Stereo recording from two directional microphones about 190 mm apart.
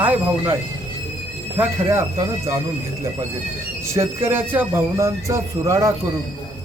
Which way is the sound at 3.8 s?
15° right (ahead or behind).